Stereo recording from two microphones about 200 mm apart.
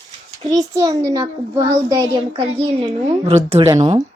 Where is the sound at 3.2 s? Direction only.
30° right (ahead or behind).